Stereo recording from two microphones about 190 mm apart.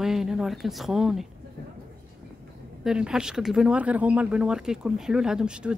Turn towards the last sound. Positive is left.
turn(degrees=-5)  # may be behind; listen again after turning